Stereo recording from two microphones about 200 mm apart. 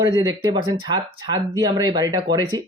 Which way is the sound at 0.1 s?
20° right (ahead or behind).